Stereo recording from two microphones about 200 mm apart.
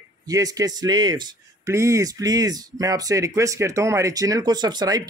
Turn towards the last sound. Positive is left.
turn(degrees=-20)  # may be behind; listen again after turning